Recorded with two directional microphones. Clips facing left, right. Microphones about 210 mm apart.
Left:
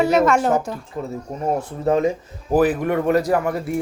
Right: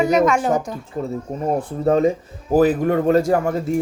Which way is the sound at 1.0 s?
35° right (ahead or behind).